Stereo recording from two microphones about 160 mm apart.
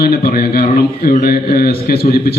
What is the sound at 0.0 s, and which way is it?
A man's voice, 70° left (ahead or behind).